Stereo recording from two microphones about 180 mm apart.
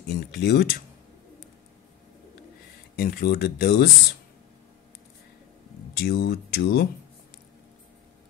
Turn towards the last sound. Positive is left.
turn(degrees=60)  # may be behind; listen again after turning